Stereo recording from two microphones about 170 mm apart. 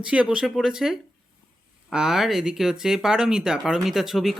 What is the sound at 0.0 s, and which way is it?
Speech, 5° right (ahead or behind).